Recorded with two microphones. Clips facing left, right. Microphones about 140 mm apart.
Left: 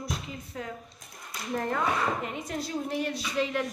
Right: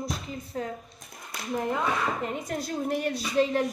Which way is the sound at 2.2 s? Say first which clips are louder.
Right 2 dB; 45° right (ahead or behind).